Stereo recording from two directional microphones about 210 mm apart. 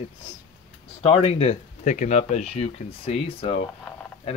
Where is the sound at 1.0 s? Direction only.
30° left (ahead or behind).